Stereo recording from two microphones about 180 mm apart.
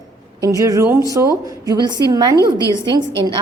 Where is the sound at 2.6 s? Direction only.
20° left (ahead or behind).